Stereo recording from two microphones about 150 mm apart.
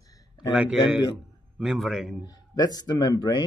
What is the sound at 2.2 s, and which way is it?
Speech, 25° left (ahead or behind).